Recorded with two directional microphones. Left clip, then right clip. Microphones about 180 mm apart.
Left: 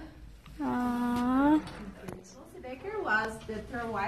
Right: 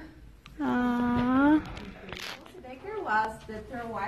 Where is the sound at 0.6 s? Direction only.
10° right (ahead or behind).